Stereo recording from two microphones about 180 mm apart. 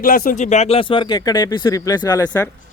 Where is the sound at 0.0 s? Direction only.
50° left (ahead or behind).